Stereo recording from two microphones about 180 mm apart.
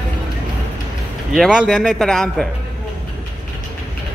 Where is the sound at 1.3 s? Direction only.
Centre (ahead or behind).